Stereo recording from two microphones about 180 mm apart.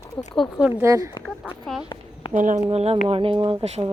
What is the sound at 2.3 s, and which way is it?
Speech, 45° right (ahead or behind).